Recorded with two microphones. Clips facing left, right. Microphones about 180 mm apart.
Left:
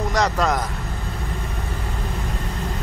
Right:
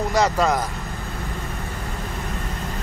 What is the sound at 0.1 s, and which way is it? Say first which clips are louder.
Speech: right 2 dB; 5° right (ahead or behind).